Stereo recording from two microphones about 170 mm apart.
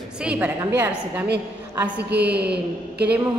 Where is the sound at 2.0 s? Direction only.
75° right (ahead or behind).